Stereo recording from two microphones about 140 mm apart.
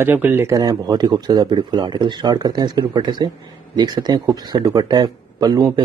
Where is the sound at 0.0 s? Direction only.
15° right (ahead or behind).